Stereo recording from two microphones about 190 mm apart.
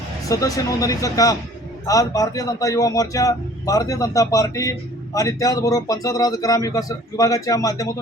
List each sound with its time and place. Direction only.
0.3 s a man's voice: 15° left (ahead or behind)